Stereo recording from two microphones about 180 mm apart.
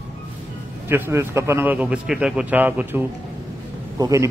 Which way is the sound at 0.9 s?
15° right (ahead or behind).